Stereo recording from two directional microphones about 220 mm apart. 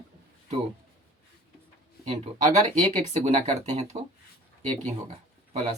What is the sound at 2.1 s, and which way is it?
Speech, 25° right (ahead or behind).